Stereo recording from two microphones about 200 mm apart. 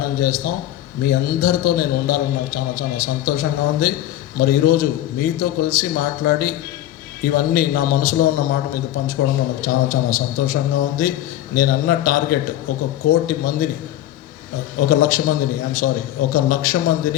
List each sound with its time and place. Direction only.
0.2 s a man's voice: 50° left (ahead or behind)
14.8 s a man's voice: 45° left (ahead or behind)